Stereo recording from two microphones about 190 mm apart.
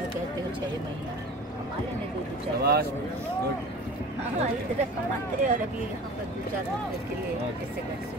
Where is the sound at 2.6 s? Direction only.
55° right (ahead or behind).